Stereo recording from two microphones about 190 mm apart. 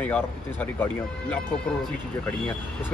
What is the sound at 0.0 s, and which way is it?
Speech, 10° left (ahead or behind).